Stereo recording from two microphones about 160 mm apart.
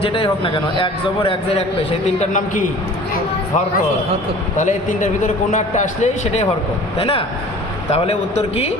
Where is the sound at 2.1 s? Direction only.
45° left (ahead or behind).